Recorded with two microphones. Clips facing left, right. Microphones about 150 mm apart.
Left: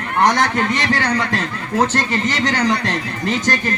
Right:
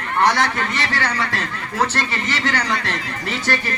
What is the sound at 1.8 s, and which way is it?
Speech, 45° left (ahead or behind).